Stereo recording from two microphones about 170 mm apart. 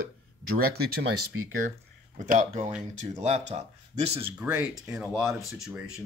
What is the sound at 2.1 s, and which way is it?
Speech, 45° right (ahead or behind).